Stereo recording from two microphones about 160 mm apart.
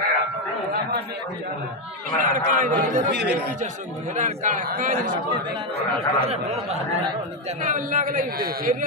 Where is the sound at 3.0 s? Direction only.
90° right.